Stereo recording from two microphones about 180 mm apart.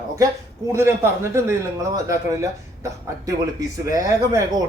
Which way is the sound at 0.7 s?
15° right (ahead or behind).